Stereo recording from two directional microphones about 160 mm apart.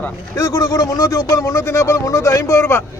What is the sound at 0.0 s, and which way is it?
Speech, 20° left (ahead or behind).